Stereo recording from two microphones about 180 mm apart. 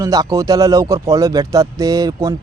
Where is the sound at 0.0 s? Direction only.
20° right (ahead or behind).